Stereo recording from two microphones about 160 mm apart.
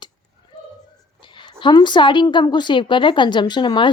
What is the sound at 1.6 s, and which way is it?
Speech, 30° left (ahead or behind).